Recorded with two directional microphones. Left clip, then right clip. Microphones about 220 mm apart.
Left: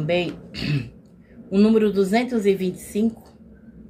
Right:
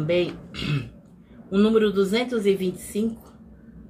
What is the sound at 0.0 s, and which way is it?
Speech, 10° left (ahead or behind).